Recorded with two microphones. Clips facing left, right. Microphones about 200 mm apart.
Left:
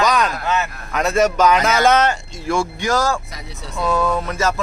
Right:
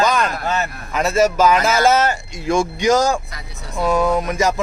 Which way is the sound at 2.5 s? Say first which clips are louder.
Right 4 dB; 20° right (ahead or behind).